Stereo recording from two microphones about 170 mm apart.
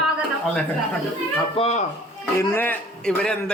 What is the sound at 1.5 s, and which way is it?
Speech, 40° left (ahead or behind).